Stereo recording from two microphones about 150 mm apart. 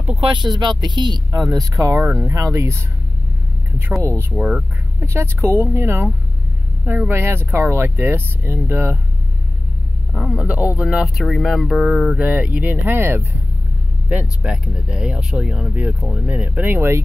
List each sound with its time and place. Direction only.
0.2 s speech: 30° right (ahead or behind)
4.4 s speech: 5° right (ahead or behind)
5.0 s speech: 15° right (ahead or behind)
10.1 s speech: 5° right (ahead or behind)
14.4 s speech: 5° right (ahead or behind)